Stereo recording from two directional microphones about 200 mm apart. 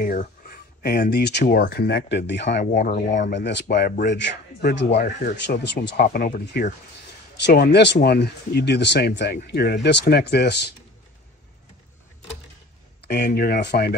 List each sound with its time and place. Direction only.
0.0 s speech: 45° left (ahead or behind)
2.6 s speech: 45° left (ahead or behind)
3.3 s speech: 60° left (ahead or behind)
5.0 s speech: 45° left (ahead or behind)
6.1 s speech: 45° left (ahead or behind)
7.4 s speech: 55° left (ahead or behind)
13.0 s speech: 55° left (ahead or behind)